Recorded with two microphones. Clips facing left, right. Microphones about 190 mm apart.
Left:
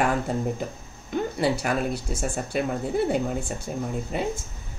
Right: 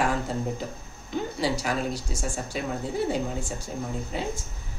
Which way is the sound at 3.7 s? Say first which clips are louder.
Left 5 dB; 60° left (ahead or behind).